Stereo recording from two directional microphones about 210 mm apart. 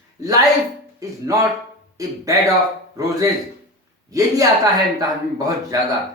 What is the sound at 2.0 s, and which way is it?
Speech, 15° right (ahead or behind).